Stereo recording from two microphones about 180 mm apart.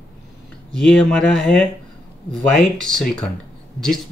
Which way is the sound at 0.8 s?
5° left (ahead or behind).